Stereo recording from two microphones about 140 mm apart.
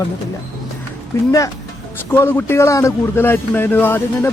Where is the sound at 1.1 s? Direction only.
20° left (ahead or behind).